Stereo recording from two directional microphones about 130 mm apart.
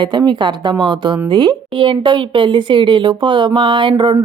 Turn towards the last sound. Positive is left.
turn(degrees=-35)  # may be behind; listen again after turning